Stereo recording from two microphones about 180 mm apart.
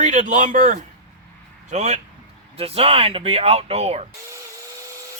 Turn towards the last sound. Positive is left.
turn(degrees=-35)  # may be behind; listen again after turning